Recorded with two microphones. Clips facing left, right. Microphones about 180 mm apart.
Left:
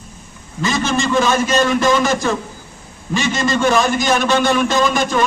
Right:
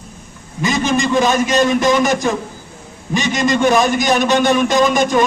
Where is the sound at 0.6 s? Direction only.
15° right (ahead or behind).